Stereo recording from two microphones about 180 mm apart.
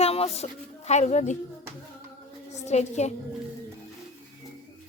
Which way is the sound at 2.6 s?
40° left (ahead or behind).